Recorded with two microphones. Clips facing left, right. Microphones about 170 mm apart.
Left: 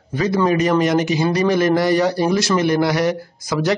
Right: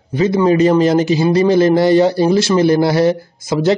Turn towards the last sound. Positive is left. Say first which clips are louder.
# right 5 dB
turn(degrees=-25)  # may be behind; listen again after turning